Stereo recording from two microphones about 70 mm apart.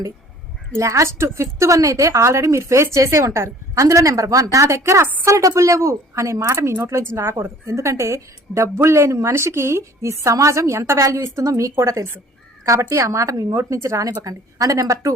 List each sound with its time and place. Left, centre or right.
0.7 s a woman's voice: right
4.5 s a woman's voice: right